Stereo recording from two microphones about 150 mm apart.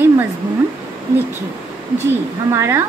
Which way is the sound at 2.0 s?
20° right (ahead or behind).